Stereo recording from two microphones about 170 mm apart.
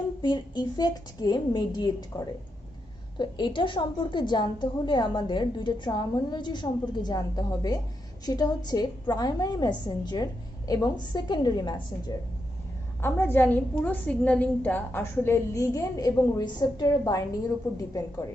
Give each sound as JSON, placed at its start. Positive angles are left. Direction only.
{"t": 0.2, "sound": "a woman's voice", "side_deg": 25}
{"t": 13.0, "sound": "a woman's voice", "side_deg": 10}